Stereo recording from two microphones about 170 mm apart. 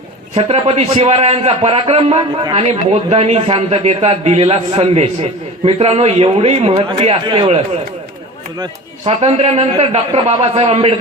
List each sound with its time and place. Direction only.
0.3 s a man's voice: 35° right (ahead or behind)
9.0 s a man's voice: 35° right (ahead or behind)